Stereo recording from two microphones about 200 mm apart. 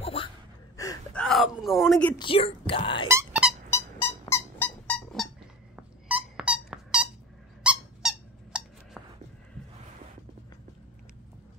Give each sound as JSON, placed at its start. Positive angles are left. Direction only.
{"t": 0.0, "sound": "gasp", "side_deg": 30}
{"t": 0.8, "sound": "gasp", "side_deg": 15}
{"t": 1.1, "sound": "a sound", "side_deg": 0}
{"t": 2.1, "sound": "speech", "side_deg": 25}
{"t": 3.1, "sound": "squeak", "side_deg": -10}
{"t": 3.7, "sound": "a sound", "side_deg": 10}
{"t": 7.6, "sound": "squeak", "side_deg": -5}